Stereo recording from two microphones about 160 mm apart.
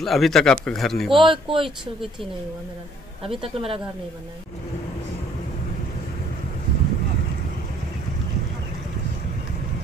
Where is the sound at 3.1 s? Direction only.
35° right (ahead or behind).